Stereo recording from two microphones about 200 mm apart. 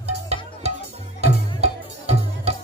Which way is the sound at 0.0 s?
30° right (ahead or behind).